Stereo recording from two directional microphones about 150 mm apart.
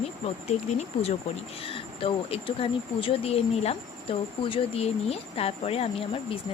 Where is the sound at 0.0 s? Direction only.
45° left (ahead or behind).